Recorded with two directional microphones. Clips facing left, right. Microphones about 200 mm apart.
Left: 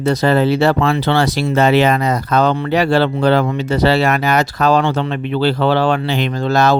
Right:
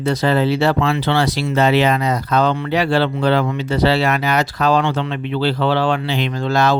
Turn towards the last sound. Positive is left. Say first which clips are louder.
# left 3 dB
turn(degrees=40)  # may be behind; listen again after turning